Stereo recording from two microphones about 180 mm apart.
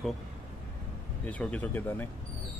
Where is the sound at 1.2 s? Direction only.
5° left (ahead or behind).